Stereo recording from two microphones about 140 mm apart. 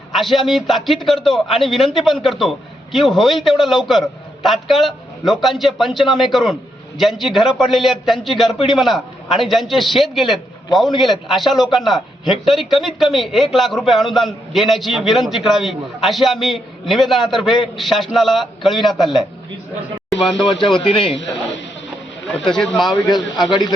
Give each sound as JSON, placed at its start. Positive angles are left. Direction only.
{"t": 0.1, "sound": "a man's voice", "side_deg": 0}
{"t": 20.8, "sound": "a man's voice", "side_deg": 40}
{"t": 22.4, "sound": "a man's voice", "side_deg": 5}
{"t": 22.9, "sound": "a man's voice", "side_deg": 30}